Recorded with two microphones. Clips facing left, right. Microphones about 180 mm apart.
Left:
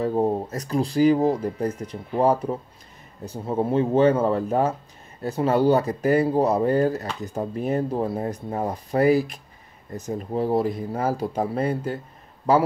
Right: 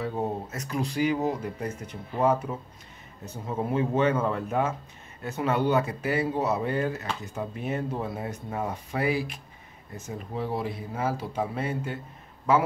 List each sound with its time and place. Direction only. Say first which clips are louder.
0.0 s speech: left 8 dB; 35° left (ahead or behind)